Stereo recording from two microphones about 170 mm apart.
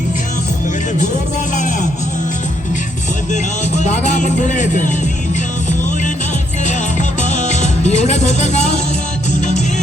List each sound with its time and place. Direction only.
1.5 s music: 45° left (ahead or behind)
3.3 s speech: 45° left (ahead or behind)
7.2 s music: 45° left (ahead or behind)